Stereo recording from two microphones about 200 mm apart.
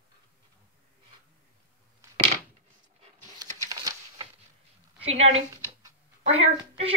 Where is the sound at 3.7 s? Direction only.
20° right (ahead or behind).